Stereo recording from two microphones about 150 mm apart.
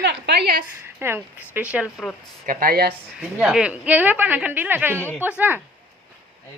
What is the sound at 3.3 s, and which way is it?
A woman's voice, 5° right (ahead or behind).